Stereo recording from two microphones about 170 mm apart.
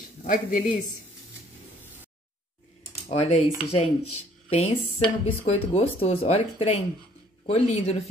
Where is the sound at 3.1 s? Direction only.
40° left (ahead or behind).